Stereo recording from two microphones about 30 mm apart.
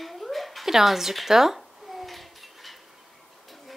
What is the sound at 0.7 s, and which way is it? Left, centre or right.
Speech, centre.